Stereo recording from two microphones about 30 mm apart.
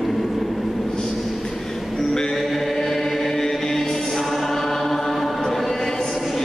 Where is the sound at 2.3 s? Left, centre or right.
Centre.